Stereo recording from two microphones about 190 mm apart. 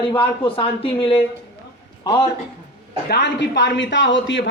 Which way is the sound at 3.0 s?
60° left (ahead or behind).